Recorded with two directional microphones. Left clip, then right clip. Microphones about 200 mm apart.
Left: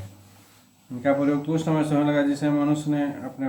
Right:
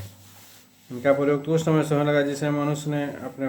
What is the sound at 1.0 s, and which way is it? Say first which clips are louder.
Speech: right 2 dB; 40° right (ahead or behind).